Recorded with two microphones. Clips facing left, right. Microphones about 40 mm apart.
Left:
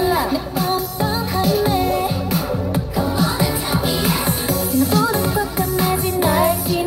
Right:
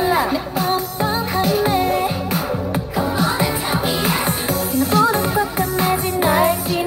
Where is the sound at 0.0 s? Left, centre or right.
Right.